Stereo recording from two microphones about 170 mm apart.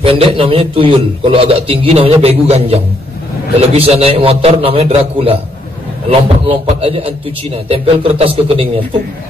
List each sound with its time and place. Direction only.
0.1 s a man's voice: 30° right (ahead or behind)